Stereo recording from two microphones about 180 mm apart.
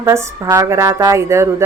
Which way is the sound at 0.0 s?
15° right (ahead or behind).